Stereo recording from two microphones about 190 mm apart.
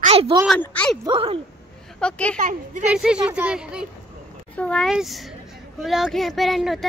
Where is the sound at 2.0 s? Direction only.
5° left (ahead or behind).